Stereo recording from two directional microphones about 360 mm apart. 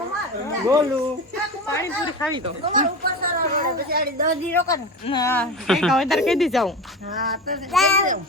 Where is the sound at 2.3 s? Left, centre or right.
Centre.